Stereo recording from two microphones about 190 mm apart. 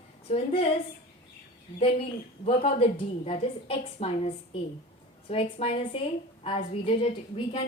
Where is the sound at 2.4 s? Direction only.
30° left (ahead or behind).